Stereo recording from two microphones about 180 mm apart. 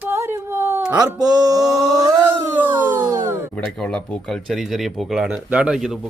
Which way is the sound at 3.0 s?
20° right (ahead or behind).